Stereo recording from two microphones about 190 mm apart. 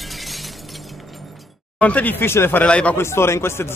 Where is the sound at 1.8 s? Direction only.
10° left (ahead or behind).